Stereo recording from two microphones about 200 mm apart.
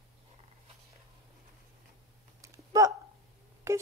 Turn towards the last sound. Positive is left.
turn(degrees=-15)  # may be behind; listen again after turning